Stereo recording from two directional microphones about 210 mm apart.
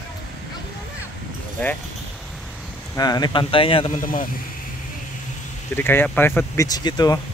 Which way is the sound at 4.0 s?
40° left (ahead or behind).